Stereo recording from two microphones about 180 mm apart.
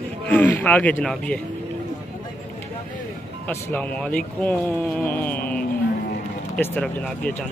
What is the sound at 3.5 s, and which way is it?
A man's voice, 10° left (ahead or behind).